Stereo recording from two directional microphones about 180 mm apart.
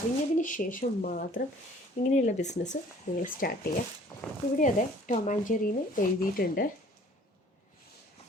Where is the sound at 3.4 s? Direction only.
55° left (ahead or behind).